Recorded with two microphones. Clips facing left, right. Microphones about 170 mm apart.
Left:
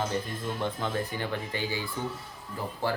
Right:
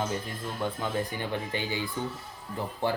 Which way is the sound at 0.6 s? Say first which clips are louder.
Right 2 dB; 15° right (ahead or behind).